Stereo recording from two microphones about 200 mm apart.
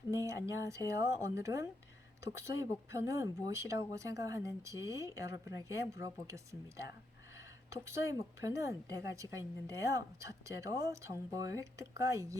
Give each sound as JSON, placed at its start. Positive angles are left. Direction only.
{"t": 0.1, "sound": "a woman's voice", "side_deg": -15}